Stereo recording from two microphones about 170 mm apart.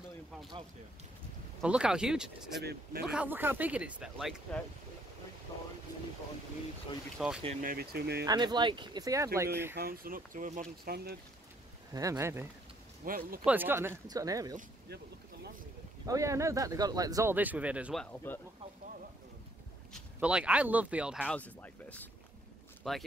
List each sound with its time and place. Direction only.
1.6 s speech: 5° right (ahead or behind)
2.6 s speech: 70° right (ahead or behind)
3.1 s speech: 10° right (ahead or behind)
7.2 s speech: centre (ahead or behind)
7.6 s speech: 65° right (ahead or behind)
8.3 s speech: 25° right (ahead or behind)
9.8 s speech: 60° right (ahead or behind)
11.9 s speech: 20° right (ahead or behind)
13.0 s speech: 55° right (ahead or behind)
13.5 s speech: 10° right (ahead or behind)
16.1 s speech: 20° right (ahead or behind)
18.0 s speech: 10° left (ahead or behind)
19.9 s speech: 5° right (ahead or behind)
21.2 s speech: 10° left (ahead or behind)